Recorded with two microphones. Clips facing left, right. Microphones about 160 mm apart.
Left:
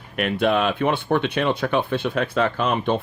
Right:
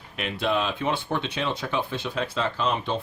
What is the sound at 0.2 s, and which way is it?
Speech, 55° left (ahead or behind).